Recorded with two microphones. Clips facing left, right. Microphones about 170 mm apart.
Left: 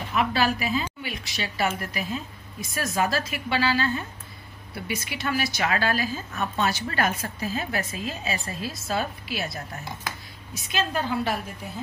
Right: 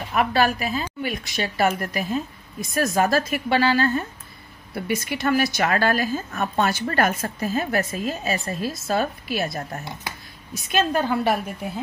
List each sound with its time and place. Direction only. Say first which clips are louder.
0.1 s a woman's voice: right 3 dB; 55° right (ahead or behind)
10.7 s a woman's voice: right 5 dB; 50° right (ahead or behind)